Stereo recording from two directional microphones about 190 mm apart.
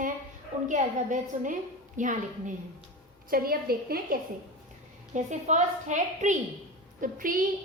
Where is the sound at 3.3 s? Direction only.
50° right (ahead or behind).